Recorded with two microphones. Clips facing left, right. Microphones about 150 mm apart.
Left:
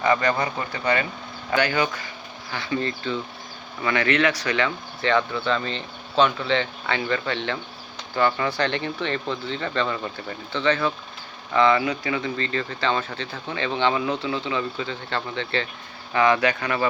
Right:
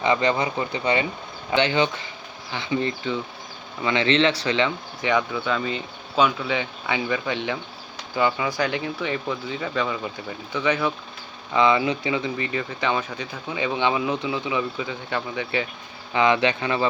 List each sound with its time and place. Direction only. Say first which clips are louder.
0.0 s speech: even; 20° right (ahead or behind)